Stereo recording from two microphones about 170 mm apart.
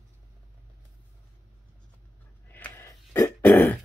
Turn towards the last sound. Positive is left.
turn(degrees=10)  # may be behind; listen again after turning